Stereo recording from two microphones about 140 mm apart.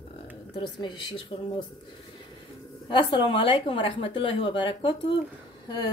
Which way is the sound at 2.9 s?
35° left (ahead or behind).